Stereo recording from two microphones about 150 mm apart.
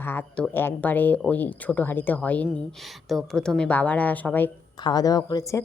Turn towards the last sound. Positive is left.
turn(degrees=25)  # may be behind; listen again after turning